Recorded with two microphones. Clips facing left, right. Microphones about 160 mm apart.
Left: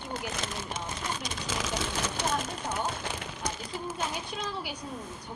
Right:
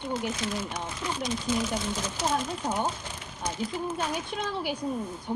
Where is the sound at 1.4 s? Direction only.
90° left.